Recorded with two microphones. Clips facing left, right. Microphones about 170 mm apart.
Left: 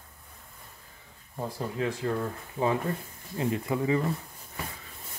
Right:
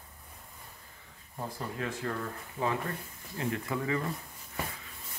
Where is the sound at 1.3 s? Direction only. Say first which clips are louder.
Left 5 dB; 15° left (ahead or behind).